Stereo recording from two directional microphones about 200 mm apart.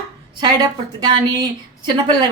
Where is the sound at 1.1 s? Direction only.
20° right (ahead or behind).